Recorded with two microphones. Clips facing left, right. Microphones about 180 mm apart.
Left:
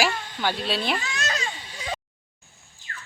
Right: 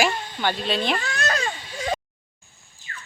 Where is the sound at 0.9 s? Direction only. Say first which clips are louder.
Right 3 dB; 60° right (ahead or behind).